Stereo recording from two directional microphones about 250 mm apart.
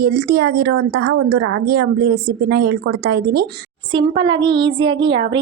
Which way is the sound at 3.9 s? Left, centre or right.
Centre.